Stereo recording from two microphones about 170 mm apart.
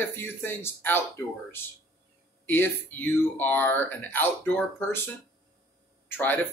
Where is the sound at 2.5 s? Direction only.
10° left (ahead or behind).